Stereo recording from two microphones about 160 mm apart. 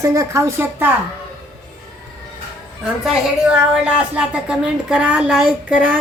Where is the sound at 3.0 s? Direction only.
5° right (ahead or behind).